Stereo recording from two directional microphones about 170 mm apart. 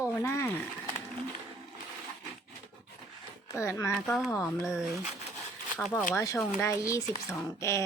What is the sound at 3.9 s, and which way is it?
Speech, 5° left (ahead or behind).